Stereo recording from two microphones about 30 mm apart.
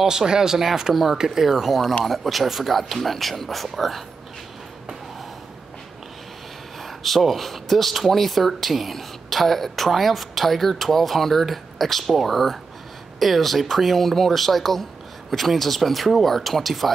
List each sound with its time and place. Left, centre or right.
0.0 s speech: right
2.0 s speech: centre
6.8 s speech: centre